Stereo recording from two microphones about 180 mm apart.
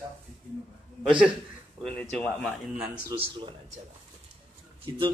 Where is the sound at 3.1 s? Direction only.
25° right (ahead or behind).